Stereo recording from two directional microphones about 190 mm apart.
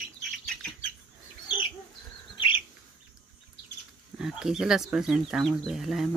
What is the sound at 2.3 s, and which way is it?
Bird, 25° left (ahead or behind).